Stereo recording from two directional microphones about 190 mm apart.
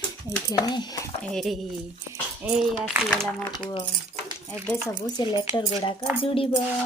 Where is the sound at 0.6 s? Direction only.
20° left (ahead or behind).